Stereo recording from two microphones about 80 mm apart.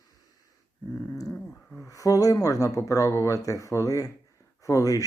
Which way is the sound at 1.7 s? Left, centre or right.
Left.